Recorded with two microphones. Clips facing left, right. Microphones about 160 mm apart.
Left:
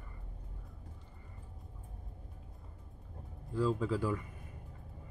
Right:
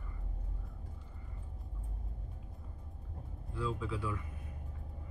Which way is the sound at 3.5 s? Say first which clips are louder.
Left 6 dB; 40° left (ahead or behind).